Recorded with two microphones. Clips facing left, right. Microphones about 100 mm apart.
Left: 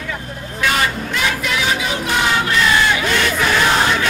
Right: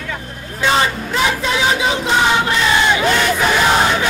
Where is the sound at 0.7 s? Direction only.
25° right (ahead or behind).